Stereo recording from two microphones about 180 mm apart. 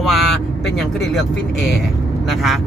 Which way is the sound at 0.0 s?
Centre (ahead or behind).